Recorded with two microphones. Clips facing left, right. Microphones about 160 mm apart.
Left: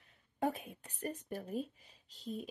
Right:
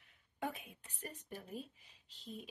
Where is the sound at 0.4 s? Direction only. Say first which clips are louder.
Left 7 dB; 40° left (ahead or behind).